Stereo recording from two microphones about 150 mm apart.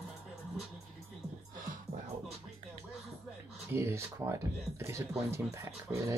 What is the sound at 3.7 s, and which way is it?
Speech, 15° right (ahead or behind).